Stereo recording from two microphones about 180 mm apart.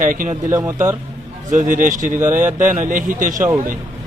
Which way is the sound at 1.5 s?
45° right (ahead or behind).